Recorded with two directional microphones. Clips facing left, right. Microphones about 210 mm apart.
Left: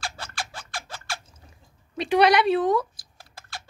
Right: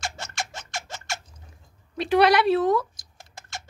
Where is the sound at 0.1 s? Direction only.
25° right (ahead or behind).